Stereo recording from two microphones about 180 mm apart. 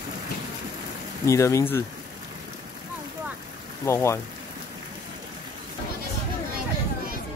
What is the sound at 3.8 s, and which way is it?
Speech, 15° left (ahead or behind).